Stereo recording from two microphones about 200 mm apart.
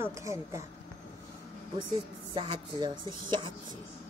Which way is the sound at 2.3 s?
25° right (ahead or behind).